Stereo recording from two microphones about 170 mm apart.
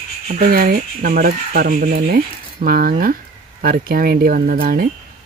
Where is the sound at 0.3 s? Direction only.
55° right (ahead or behind).